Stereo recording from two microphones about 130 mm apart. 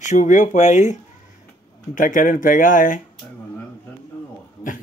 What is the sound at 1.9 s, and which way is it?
Speech, 90° left.